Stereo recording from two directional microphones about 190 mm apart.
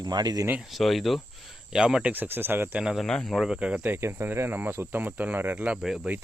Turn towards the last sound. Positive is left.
turn(degrees=-5)  # may be behind; listen again after turning